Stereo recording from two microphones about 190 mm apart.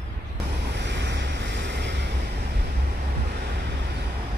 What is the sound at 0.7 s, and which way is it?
Waves, 65° right (ahead or behind).